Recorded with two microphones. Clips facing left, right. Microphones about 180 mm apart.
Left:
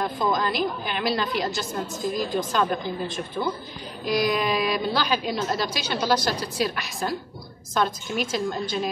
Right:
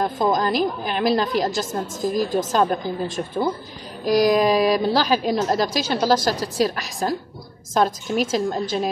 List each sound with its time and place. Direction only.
0.0 s a woman's voice: 40° right (ahead or behind)